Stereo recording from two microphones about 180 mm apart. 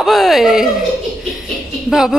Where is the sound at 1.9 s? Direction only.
Centre (ahead or behind).